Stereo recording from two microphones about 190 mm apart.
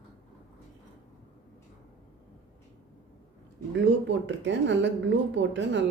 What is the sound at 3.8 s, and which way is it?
A woman's voice, 70° right (ahead or behind).